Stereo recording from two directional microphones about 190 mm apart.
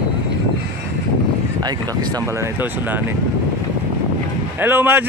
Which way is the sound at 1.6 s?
20° right (ahead or behind).